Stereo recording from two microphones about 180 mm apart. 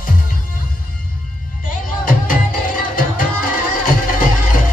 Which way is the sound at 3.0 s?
50° left (ahead or behind).